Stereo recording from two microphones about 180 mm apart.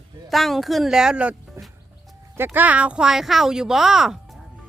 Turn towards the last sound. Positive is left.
turn(degrees=-5)  # may be behind; listen again after turning